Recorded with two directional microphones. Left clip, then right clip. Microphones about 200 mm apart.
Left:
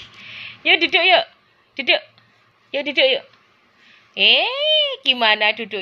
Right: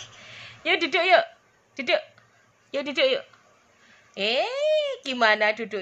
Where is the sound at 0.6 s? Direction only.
Centre (ahead or behind).